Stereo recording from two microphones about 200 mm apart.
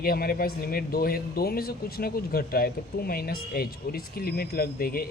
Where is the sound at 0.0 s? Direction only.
50° left (ahead or behind).